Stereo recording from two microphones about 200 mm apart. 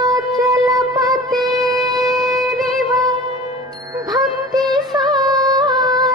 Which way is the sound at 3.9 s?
20° right (ahead or behind).